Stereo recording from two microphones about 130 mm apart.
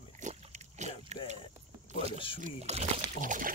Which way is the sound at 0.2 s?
55° right (ahead or behind).